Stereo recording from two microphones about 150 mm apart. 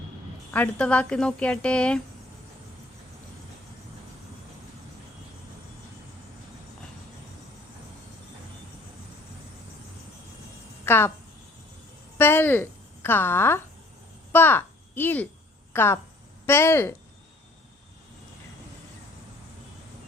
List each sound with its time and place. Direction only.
0.5 s a woman's voice: 10° left (ahead or behind)
10.8 s a woman's voice: 15° left (ahead or behind)
12.1 s a sound: 15° left (ahead or behind)
14.3 s a woman's voice: 15° left (ahead or behind)